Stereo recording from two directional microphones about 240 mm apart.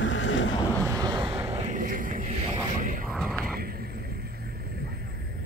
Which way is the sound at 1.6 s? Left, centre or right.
Right.